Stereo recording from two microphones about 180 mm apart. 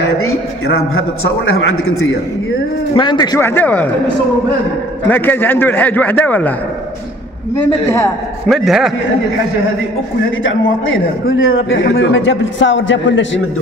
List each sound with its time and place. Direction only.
2.9 s a man's voice: 25° left (ahead or behind)
3.3 s a man's voice: 10° left (ahead or behind)
5.0 s a man's voice: 10° left (ahead or behind)
8.5 s a man's voice: centre (ahead or behind)
10.4 s a man's voice: 90° left